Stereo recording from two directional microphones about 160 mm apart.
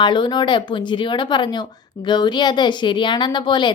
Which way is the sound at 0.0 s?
30° left (ahead or behind).